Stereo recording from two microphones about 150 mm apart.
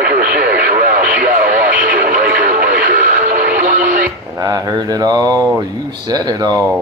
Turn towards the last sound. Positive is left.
turn(degrees=-25)  # may be behind; listen again after turning